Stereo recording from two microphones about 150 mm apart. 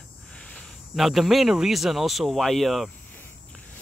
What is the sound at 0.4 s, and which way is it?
Speech, 5° left (ahead or behind).